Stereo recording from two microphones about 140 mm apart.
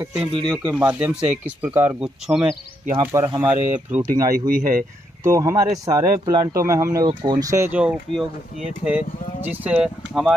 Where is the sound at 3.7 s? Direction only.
15° right (ahead or behind).